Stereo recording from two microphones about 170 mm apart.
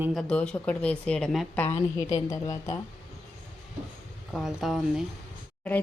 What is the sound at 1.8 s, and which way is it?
A woman's voice, 20° left (ahead or behind).